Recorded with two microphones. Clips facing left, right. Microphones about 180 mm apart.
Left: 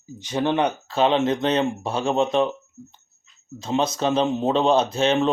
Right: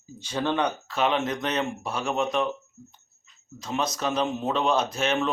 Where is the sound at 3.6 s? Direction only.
25° left (ahead or behind).